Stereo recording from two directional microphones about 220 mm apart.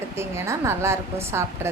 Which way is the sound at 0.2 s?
10° right (ahead or behind).